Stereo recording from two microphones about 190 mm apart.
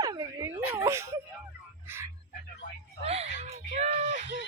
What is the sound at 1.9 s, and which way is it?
Music, 10° right (ahead or behind).